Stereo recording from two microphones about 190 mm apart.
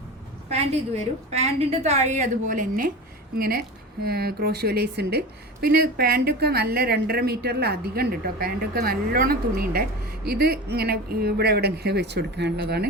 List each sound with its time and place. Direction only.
1.3 s a woman's voice: 35° right (ahead or behind); by 12.9 s 55° right (ahead or behind)